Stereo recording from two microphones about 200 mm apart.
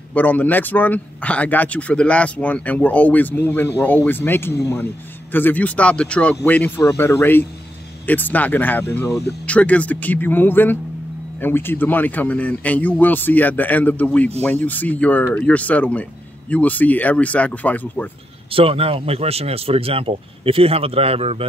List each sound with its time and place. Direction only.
0.1 s speech: 10° left (ahead or behind)
18.5 s speech: 30° right (ahead or behind)